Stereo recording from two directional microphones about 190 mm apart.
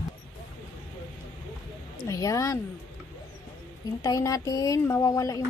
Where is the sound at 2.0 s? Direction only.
15° left (ahead or behind).